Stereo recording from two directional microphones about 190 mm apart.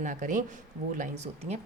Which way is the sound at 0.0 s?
40° right (ahead or behind).